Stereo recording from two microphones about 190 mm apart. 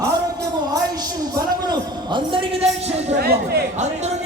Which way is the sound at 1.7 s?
25° right (ahead or behind).